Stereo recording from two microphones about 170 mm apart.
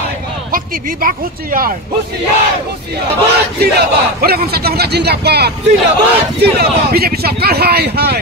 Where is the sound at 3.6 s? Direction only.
65° right (ahead or behind).